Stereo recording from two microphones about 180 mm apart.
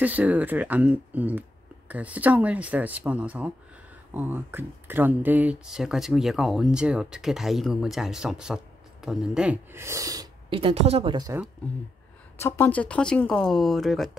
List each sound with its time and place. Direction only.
0.0 s speech: 10° right (ahead or behind)
10.6 s speech: 35° right (ahead or behind)
11.1 s speech: 20° right (ahead or behind)
12.4 s speech: 15° left (ahead or behind)